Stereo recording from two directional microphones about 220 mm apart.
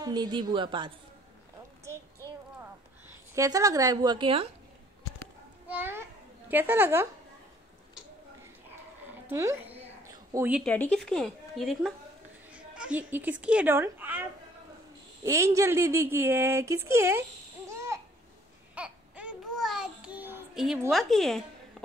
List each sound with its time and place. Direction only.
0.0 s a woman's voice: 20° right (ahead or behind)
1.9 s child singing: 10° right (ahead or behind)
3.3 s speech: 15° right (ahead or behind)
5.7 s children playing: 10° right (ahead or behind)
6.5 s speech: 10° right (ahead or behind)
9.3 s a sound: 10° right (ahead or behind)
10.6 s a woman's voice: 5° left (ahead or behind)
15.2 s speech: 15° right (ahead or behind)
17.6 s babbling: 15° right (ahead or behind)
18.8 s babbling: 5° right (ahead or behind)